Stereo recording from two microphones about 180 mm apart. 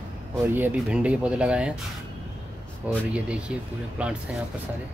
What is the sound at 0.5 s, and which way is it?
Speech, 10° right (ahead or behind).